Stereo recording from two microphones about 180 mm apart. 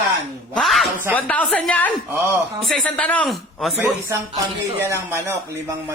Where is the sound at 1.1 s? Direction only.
10° left (ahead or behind).